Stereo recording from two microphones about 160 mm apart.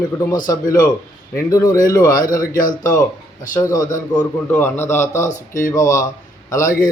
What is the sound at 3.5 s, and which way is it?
A man's voice, 20° left (ahead or behind).